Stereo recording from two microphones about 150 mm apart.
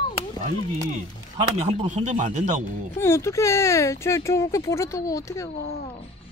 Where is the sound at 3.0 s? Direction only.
20° left (ahead or behind).